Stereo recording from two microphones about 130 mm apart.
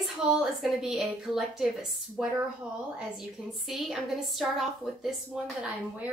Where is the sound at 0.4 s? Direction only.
5° right (ahead or behind).